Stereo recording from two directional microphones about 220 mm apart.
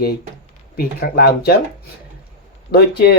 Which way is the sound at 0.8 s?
45° left (ahead or behind).